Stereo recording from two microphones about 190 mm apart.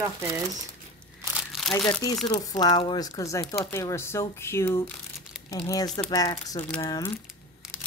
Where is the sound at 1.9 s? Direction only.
20° left (ahead or behind).